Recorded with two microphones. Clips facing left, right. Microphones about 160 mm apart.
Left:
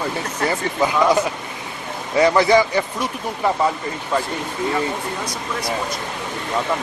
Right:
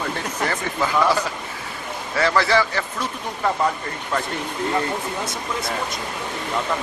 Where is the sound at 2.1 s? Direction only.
20° left (ahead or behind).